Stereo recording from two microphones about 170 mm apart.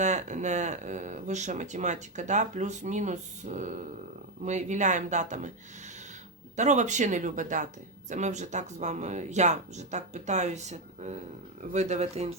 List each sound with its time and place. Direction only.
0.0 s speech: 45° right (ahead or behind)
6.6 s speech: 45° right (ahead or behind)